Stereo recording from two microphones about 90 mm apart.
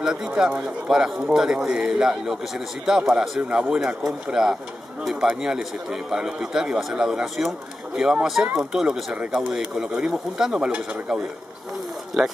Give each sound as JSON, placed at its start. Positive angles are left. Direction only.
{"t": 0.0, "sound": "speech", "side_deg": -5}